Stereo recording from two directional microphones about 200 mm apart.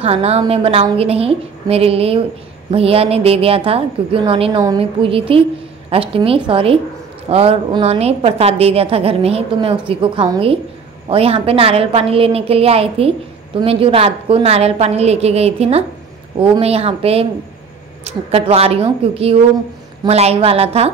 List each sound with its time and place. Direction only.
0.0 s a woman's voice: 30° right (ahead or behind)